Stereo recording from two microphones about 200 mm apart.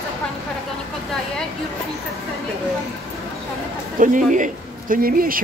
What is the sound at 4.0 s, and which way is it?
Speech, 40° right (ahead or behind).